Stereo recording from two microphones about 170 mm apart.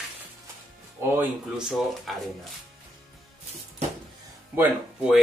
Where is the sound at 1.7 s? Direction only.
Centre (ahead or behind).